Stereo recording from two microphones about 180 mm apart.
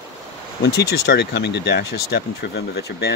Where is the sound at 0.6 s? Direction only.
65° left (ahead or behind).